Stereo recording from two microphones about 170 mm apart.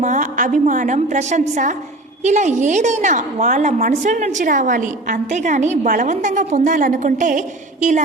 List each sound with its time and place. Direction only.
0.0 s a woman's voice: 45° right (ahead or behind)